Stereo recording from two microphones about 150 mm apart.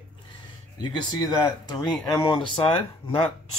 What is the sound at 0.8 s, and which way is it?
Speech, 30° left (ahead or behind).